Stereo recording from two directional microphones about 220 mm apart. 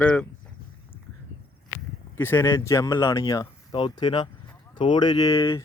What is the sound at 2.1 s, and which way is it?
Speech, 10° left (ahead or behind).